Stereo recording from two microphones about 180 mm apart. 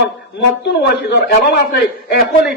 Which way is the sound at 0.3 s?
65° left (ahead or behind).